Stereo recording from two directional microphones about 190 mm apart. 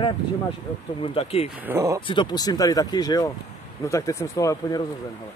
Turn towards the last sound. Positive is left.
turn(degrees=15)  # may be behind; listen again after turning